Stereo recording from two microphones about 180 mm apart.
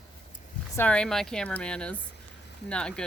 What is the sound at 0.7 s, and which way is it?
A woman's voice, 5° left (ahead or behind).